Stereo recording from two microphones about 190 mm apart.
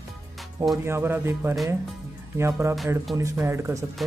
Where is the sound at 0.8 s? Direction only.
10° right (ahead or behind).